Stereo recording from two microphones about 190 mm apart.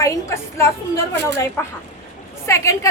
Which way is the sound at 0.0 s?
15° left (ahead or behind).